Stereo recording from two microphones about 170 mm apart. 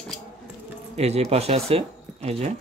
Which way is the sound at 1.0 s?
40° right (ahead or behind).